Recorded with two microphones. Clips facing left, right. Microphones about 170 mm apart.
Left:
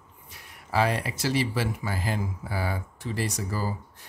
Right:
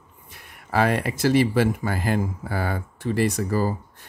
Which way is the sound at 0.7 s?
55° right (ahead or behind).